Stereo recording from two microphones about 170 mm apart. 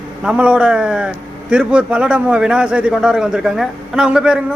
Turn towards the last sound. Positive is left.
turn(degrees=-5)  # may be behind; listen again after turning